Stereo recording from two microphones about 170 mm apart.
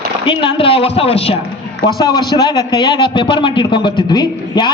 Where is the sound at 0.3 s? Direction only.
30° left (ahead or behind).